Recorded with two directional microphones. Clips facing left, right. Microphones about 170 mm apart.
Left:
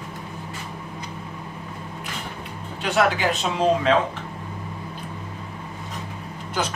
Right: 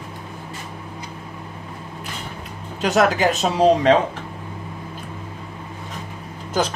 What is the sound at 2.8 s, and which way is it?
Speech, 40° right (ahead or behind).